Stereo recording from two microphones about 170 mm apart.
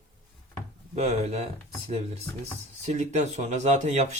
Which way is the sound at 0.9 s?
40° right (ahead or behind).